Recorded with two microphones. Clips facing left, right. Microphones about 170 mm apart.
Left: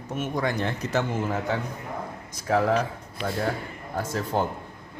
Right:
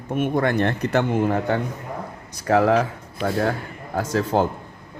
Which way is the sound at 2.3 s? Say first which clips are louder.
Right 5 dB; 70° right (ahead or behind).